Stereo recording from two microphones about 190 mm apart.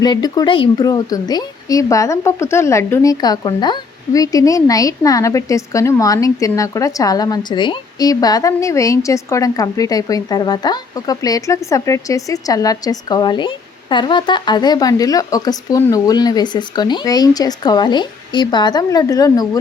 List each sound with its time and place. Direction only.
0.0 s speech: 20° left (ahead or behind)